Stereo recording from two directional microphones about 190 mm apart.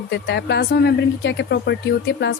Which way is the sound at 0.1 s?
60° left (ahead or behind).